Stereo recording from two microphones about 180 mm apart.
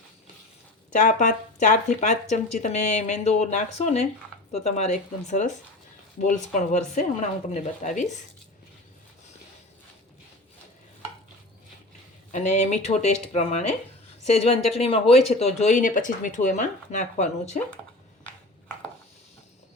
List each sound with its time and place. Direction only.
0.9 s speech: 45° left (ahead or behind)
12.3 s speech: 40° left (ahead or behind)